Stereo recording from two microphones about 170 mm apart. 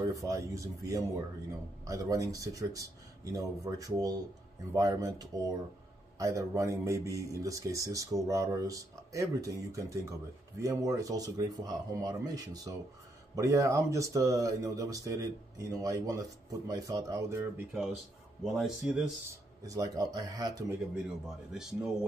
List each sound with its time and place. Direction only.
0.0 s speech: 20° right (ahead or behind)
18.4 s speech: centre (ahead or behind)
19.6 s speech: 20° right (ahead or behind)
21.5 s speech: 5° right (ahead or behind)